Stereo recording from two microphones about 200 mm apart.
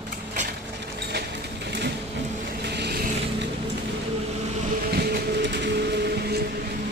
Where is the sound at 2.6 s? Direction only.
55° right (ahead or behind).